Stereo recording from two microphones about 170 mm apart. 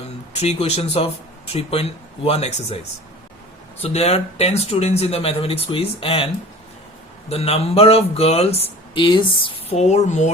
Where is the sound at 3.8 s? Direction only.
35° left (ahead or behind).